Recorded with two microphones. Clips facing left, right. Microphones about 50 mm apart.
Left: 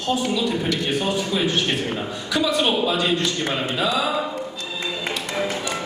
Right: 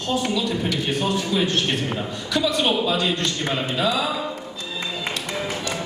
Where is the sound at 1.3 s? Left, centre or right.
Centre.